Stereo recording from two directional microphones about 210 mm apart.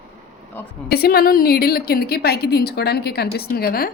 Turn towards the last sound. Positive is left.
turn(degrees=45)  # may be behind; listen again after turning